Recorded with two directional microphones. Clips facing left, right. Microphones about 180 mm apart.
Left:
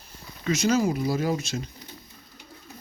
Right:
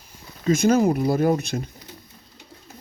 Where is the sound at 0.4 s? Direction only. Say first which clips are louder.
Right 5 dB; 50° right (ahead or behind).